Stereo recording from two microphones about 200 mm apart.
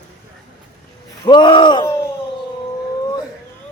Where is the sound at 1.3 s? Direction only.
25° left (ahead or behind).